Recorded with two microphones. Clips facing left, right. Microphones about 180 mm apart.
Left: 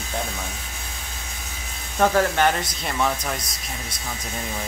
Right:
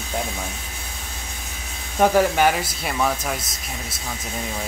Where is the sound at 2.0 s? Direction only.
10° right (ahead or behind).